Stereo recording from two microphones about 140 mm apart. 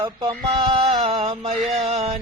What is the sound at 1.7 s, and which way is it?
Music, 50° right (ahead or behind).